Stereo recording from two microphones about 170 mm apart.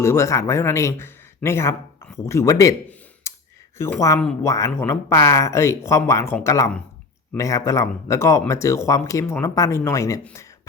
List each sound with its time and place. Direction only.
0.0 s speech: 15° left (ahead or behind)
3.3 s a sound: 15° left (ahead or behind)
3.8 s speech: 15° left (ahead or behind)